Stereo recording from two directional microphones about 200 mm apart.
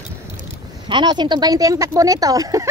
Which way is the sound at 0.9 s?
20° right (ahead or behind).